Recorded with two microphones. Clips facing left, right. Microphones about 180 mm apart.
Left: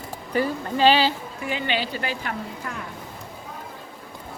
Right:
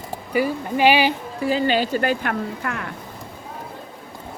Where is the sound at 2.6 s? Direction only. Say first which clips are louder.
Right 5 dB; 75° right (ahead or behind).